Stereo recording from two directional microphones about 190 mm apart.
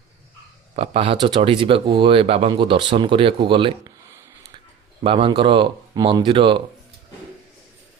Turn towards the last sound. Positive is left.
turn(degrees=-25)  # may be behind; listen again after turning